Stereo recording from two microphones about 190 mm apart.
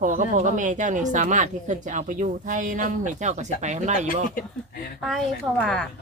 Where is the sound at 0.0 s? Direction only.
45° right (ahead or behind).